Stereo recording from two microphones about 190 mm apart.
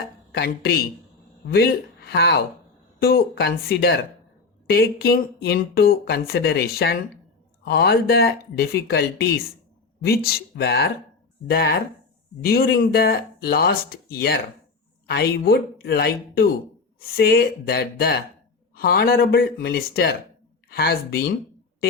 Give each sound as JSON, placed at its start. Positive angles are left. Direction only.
{"t": 0.3, "sound": "speech", "side_deg": 60}